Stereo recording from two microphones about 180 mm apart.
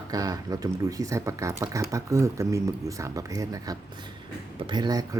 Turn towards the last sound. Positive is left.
turn(degrees=-20)  # may be behind; listen again after turning